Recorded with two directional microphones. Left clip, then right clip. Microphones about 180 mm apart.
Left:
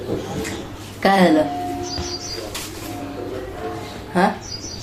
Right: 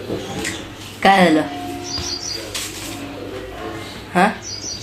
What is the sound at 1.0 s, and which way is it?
Speech, 25° right (ahead or behind).